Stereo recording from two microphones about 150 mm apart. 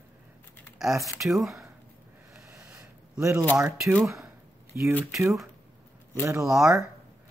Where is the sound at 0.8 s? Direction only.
Centre (ahead or behind).